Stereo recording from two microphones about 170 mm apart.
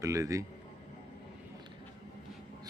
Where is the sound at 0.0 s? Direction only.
20° right (ahead or behind).